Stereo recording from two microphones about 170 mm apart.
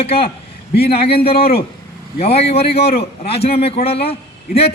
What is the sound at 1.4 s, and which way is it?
Speech, 65° left (ahead or behind).